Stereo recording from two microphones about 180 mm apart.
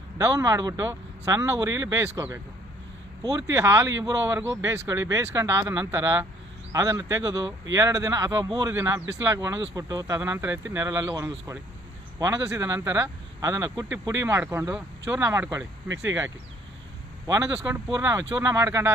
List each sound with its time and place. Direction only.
0.2 s speech: 20° right (ahead or behind)